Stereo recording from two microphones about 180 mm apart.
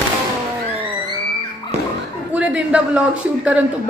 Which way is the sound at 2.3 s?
10° right (ahead or behind).